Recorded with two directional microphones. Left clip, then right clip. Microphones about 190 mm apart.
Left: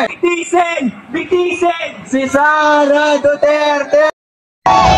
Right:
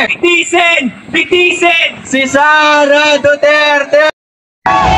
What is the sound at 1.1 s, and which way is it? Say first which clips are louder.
A man's voice: right 6 dB; 20° right (ahead or behind).